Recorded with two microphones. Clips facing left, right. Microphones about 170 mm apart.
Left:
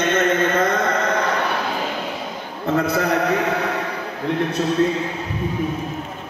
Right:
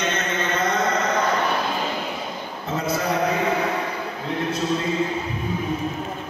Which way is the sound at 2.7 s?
60° left (ahead or behind).